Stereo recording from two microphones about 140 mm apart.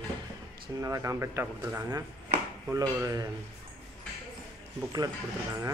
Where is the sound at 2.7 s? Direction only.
25° right (ahead or behind).